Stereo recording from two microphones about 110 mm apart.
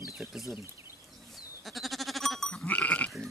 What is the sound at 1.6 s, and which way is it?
Goat, centre (ahead or behind).